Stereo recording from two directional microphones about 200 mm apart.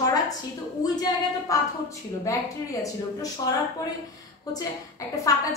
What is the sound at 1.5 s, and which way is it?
A woman's voice, 15° left (ahead or behind).